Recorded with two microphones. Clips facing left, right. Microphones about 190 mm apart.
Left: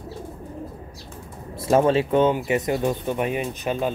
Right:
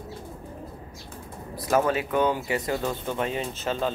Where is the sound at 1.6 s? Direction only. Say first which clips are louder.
Left 5 dB; 25° left (ahead or behind).